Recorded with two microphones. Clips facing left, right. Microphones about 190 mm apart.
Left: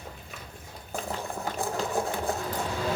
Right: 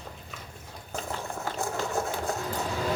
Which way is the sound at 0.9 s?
15° left (ahead or behind).